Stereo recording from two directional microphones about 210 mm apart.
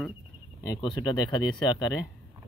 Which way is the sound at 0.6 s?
20° left (ahead or behind).